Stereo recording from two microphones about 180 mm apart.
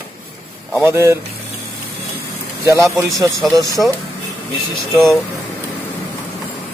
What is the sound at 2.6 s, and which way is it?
Speech, 15° right (ahead or behind).